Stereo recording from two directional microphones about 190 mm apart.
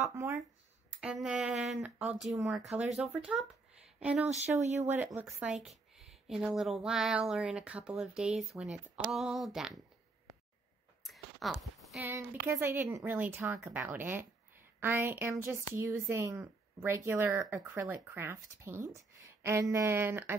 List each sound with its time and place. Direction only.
0.1 s speech: 15° right (ahead or behind)
1.2 s a woman's voice: centre (ahead or behind)
11.1 s a sound: centre (ahead or behind)
12.1 s speech: 10° right (ahead or behind)